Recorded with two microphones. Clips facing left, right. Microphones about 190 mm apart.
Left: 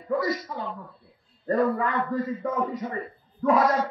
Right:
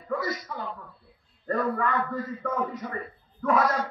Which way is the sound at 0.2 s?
25° left (ahead or behind).